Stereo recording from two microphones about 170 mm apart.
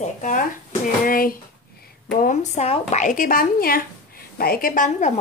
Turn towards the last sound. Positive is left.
turn(degrees=50)  # may be behind; listen again after turning